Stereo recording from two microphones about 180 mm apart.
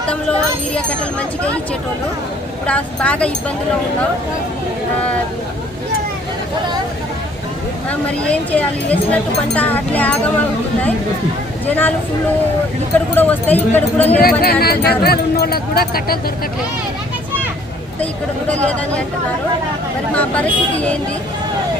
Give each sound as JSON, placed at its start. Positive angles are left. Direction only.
{"t": 0.1, "sound": "speech", "side_deg": 5}
{"t": 2.6, "sound": "speech", "side_deg": 5}
{"t": 7.9, "sound": "speech", "side_deg": 5}
{"t": 11.6, "sound": "speech", "side_deg": 10}
{"t": 13.1, "sound": "speech", "side_deg": 10}
{"t": 14.4, "sound": "speech", "side_deg": 60}
{"t": 18.0, "sound": "speech", "side_deg": 10}
{"t": 20.1, "sound": "speech", "side_deg": 5}